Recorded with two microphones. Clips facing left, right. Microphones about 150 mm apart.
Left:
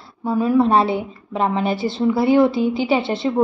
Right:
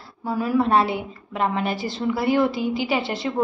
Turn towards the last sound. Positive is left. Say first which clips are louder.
# left 5 dB
turn(degrees=25)  # may be behind; listen again after turning